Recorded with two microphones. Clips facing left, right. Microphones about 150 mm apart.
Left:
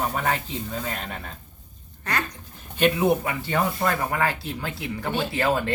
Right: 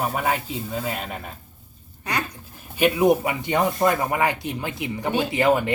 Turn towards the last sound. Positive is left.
turn(degrees=-15)  # may be behind; listen again after turning